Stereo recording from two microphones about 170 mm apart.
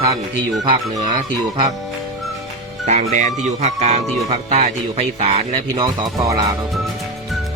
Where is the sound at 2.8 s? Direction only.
45° right (ahead or behind).